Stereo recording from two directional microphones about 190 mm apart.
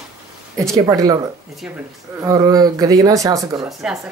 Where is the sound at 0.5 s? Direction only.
15° right (ahead or behind).